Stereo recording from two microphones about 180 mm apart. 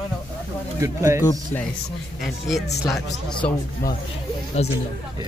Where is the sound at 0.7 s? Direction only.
15° right (ahead or behind).